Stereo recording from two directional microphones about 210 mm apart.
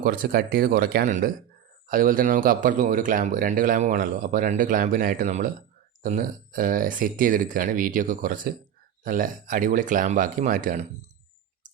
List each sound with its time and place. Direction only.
0.0 s speech: 45° right (ahead or behind)